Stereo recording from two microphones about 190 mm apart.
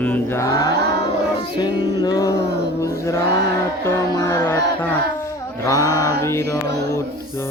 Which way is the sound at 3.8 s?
10° left (ahead or behind).